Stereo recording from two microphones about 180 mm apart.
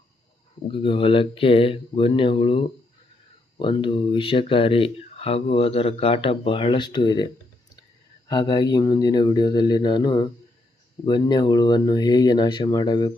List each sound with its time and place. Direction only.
0.7 s speech: 30° left (ahead or behind)
8.3 s speech: 25° left (ahead or behind)